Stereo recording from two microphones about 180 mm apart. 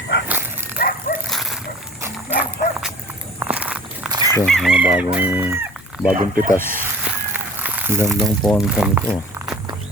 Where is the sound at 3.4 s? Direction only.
10° right (ahead or behind).